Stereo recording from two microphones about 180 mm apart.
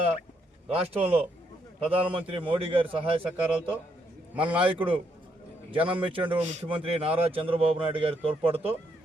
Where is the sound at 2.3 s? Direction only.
30° right (ahead or behind).